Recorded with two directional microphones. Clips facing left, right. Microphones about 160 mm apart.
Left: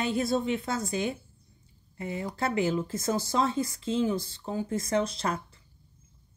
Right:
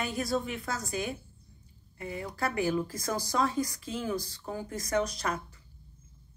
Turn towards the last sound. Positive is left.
turn(degrees=25)  # may be behind; listen again after turning